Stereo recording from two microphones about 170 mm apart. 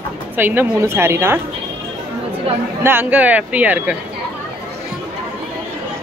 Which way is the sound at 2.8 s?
10° right (ahead or behind).